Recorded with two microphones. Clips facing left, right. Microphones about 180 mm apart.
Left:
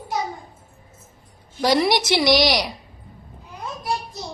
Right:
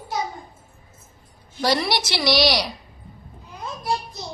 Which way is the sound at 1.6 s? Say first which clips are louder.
Left 4 dB; 15° left (ahead or behind).